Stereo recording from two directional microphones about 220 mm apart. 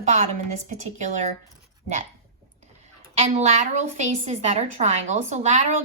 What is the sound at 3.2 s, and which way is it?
A woman's voice, 30° right (ahead or behind).